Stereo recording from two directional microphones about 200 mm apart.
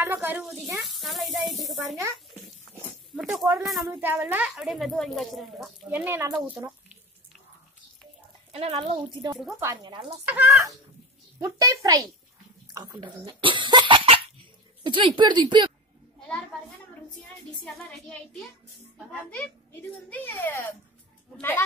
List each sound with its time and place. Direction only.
0.0 s a child's voice: 10° right (ahead or behind)
3.2 s a sound: centre (ahead or behind)
3.6 s speech: centre (ahead or behind)
4.0 s speech: 10° right (ahead or behind)
8.5 s speech: 30° right (ahead or behind)
9.3 s speech: centre (ahead or behind)
9.6 s a child's voice: 15° right (ahead or behind)
9.9 s speech: 30° right (ahead or behind)
10.2 s a child's voice: 10° right (ahead or behind)
17.9 s a child's voice: centre (ahead or behind)